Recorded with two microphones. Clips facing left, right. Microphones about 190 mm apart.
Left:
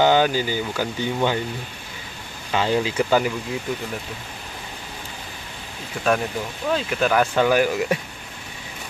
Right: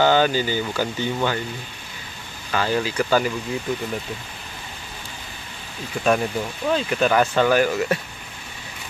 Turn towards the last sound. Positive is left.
turn(degrees=10)  # may be behind; listen again after turning